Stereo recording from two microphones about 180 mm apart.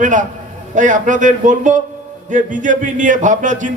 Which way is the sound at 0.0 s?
45° right (ahead or behind).